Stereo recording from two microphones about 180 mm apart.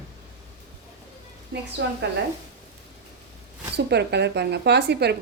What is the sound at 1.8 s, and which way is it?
Speech, 75° right (ahead or behind).